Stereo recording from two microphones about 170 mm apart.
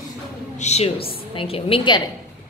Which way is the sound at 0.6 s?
40° left (ahead or behind).